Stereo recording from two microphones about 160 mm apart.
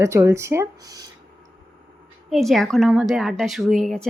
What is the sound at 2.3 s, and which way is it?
A woman's voice, centre (ahead or behind).